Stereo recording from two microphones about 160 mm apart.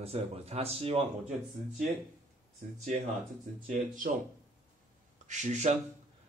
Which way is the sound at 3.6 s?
55° right (ahead or behind).